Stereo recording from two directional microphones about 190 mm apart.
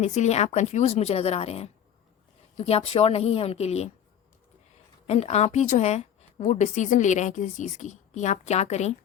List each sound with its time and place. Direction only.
0.0 s a woman's voice: 35° left (ahead or behind)
5.0 s a woman's voice: 35° left (ahead or behind)